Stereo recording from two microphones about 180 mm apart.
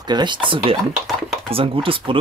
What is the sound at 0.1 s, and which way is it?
Speech, 25° right (ahead or behind).